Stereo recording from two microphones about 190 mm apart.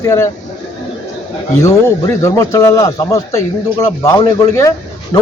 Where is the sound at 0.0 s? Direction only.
15° left (ahead or behind).